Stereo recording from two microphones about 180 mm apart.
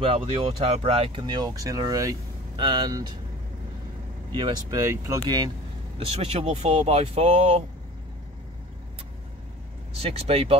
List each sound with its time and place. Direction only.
0.0 s speech: 30° right (ahead or behind)
4.3 s speech: 25° right (ahead or behind)
5.9 s speech: 35° right (ahead or behind)
9.9 s speech: 35° right (ahead or behind)